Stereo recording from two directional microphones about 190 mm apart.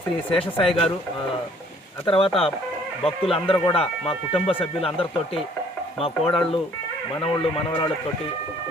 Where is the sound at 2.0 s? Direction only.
30° left (ahead or behind).